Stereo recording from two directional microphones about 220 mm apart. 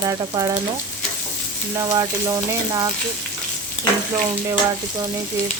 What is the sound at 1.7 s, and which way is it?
Frying, 15° right (ahead or behind).